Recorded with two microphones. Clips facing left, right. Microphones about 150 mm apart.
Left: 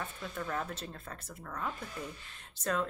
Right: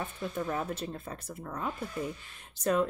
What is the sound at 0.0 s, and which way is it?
Speech, 20° right (ahead or behind).